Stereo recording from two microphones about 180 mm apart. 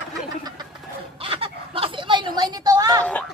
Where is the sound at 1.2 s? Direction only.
30° right (ahead or behind).